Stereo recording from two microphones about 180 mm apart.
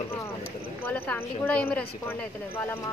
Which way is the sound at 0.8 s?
10° left (ahead or behind).